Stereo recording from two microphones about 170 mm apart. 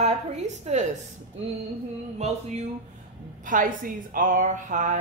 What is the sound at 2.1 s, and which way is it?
Speech, 40° right (ahead or behind).